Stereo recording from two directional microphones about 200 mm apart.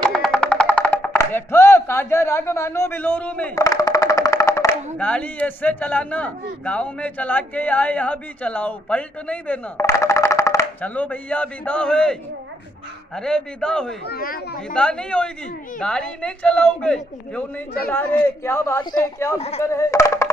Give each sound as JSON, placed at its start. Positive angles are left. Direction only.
{"t": 0.1, "sound": "music", "side_deg": 5}
{"t": 3.5, "sound": "a woman's voice", "side_deg": 15}
{"t": 14.0, "sound": "speech", "side_deg": 50}
{"t": 14.7, "sound": "a woman's voice", "side_deg": 5}
{"t": 19.3, "sound": "speech", "side_deg": 30}
{"t": 19.6, "sound": "a man's voice", "side_deg": 15}